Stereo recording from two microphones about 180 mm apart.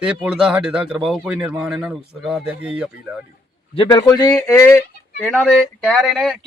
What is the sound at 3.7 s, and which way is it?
Speech, 25° left (ahead or behind).